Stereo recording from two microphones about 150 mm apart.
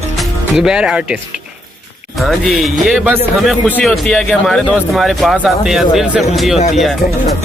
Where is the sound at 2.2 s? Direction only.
Centre (ahead or behind).